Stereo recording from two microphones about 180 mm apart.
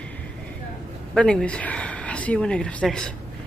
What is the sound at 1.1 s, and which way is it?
A woman's voice, 5° left (ahead or behind).